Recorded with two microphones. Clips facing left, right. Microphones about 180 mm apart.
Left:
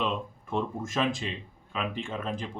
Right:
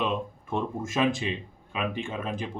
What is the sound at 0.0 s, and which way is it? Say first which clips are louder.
A man's voice: right 2 dB; 10° right (ahead or behind).